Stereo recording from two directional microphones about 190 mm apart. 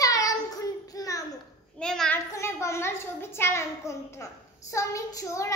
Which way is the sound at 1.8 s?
5° left (ahead or behind).